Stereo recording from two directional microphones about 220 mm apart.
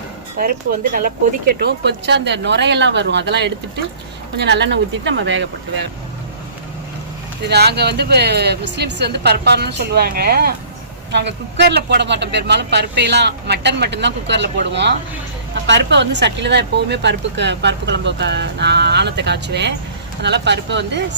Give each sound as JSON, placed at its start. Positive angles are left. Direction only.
{"t": 0.9, "sound": "speech", "side_deg": -40}
{"t": 7.4, "sound": "speech", "side_deg": -50}